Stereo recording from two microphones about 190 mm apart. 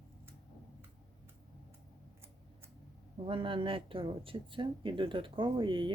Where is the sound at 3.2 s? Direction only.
25° right (ahead or behind).